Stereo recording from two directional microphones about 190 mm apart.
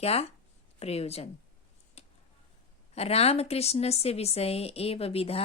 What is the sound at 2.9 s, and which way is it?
A woman's voice, 35° left (ahead or behind).